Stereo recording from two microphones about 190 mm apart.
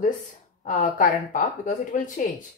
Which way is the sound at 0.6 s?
45° left (ahead or behind).